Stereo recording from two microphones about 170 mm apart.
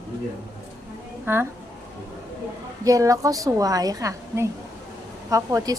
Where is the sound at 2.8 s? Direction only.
20° right (ahead or behind).